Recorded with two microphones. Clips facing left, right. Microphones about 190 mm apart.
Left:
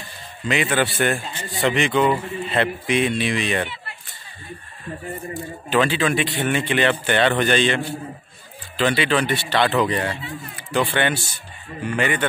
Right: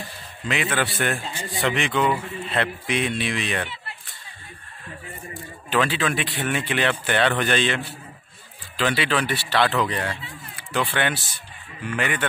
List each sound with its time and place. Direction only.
0.5 s a man's voice: centre (ahead or behind)
5.7 s a man's voice: centre (ahead or behind)